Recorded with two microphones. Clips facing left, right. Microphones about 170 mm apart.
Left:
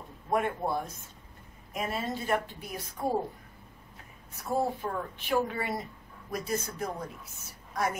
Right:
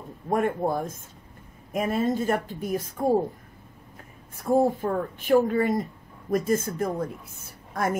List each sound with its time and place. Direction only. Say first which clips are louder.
0.3 s a woman's voice: right 5 dB; 45° right (ahead or behind)
4.4 s a woman's voice: right 8 dB; 50° right (ahead or behind)